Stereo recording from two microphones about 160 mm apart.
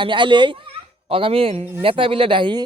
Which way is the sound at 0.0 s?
30° right (ahead or behind).